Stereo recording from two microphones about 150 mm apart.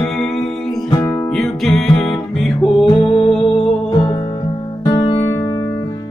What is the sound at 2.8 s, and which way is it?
Music, 40° left (ahead or behind).